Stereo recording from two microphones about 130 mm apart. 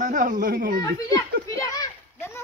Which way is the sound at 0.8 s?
30° left (ahead or behind).